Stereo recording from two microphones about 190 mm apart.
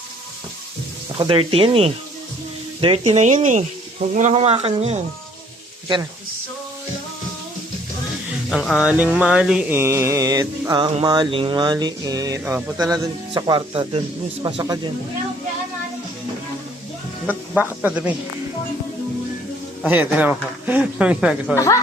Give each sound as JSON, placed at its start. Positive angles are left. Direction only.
{"t": 1.2, "sound": "speech", "side_deg": -25}
{"t": 8.3, "sound": "music", "side_deg": -5}
{"t": 12.5, "sound": "music", "side_deg": -10}
{"t": 12.8, "sound": "speech", "side_deg": -20}
{"t": 17.2, "sound": "music", "side_deg": -10}
{"t": 19.8, "sound": "music", "side_deg": -10}
{"t": 21.5, "sound": "speech", "side_deg": 15}